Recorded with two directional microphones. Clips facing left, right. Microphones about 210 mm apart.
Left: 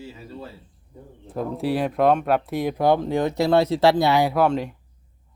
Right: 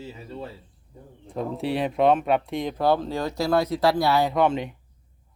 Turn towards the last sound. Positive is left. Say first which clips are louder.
# left 2 dB
turn(degrees=0)  # may be behind; listen again after turning